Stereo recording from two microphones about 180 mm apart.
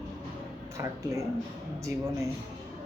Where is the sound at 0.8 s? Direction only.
15° right (ahead or behind).